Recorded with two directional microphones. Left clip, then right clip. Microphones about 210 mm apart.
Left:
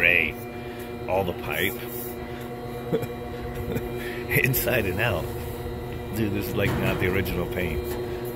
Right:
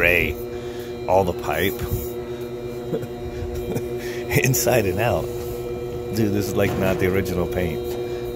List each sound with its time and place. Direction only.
0.0 s hum: 25° right (ahead or behind)
1.0 s speech: 20° right (ahead or behind)
4.3 s speech: 15° right (ahead or behind)
6.1 s speech: 20° right (ahead or behind)